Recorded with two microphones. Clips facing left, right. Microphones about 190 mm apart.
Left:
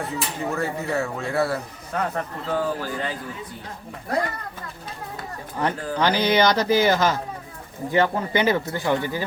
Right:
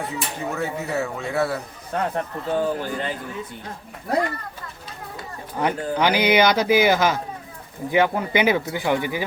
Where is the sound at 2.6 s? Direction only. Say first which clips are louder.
Right 2 dB; 20° right (ahead or behind).